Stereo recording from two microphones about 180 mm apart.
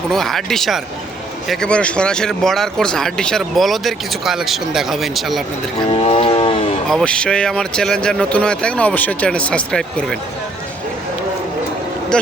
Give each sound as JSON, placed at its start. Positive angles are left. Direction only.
{"t": 0.1, "sound": "speech", "side_deg": 0}
{"t": 5.9, "sound": "vehicle", "side_deg": 35}
{"t": 6.8, "sound": "speech", "side_deg": 5}
{"t": 12.1, "sound": "speech", "side_deg": 5}